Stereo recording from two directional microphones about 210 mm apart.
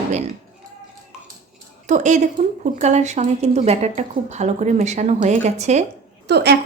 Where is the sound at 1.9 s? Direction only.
35° right (ahead or behind).